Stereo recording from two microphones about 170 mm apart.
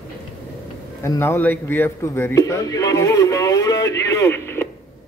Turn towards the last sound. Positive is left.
turn(degrees=15)  # may be behind; listen again after turning